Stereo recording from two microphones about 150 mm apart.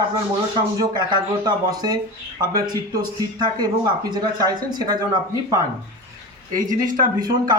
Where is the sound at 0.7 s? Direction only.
25° right (ahead or behind).